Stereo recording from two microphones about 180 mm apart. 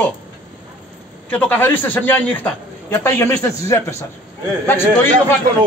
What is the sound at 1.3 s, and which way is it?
A man's voice, 10° left (ahead or behind).